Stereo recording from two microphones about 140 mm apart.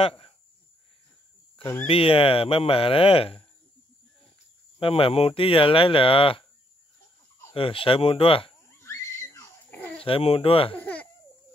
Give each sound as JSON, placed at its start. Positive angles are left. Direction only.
{"t": 0.0, "sound": "speech", "side_deg": 40}
{"t": 1.9, "sound": "speech", "side_deg": 40}
{"t": 4.7, "sound": "speech", "side_deg": 40}
{"t": 7.5, "sound": "speech", "side_deg": 40}
{"t": 8.6, "sound": "a sound", "side_deg": 20}
{"t": 10.0, "sound": "speech", "side_deg": 40}
{"t": 10.8, "sound": "a sound", "side_deg": 10}